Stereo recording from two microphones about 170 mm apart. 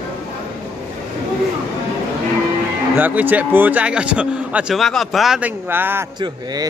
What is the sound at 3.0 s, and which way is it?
A man's voice, 10° right (ahead or behind).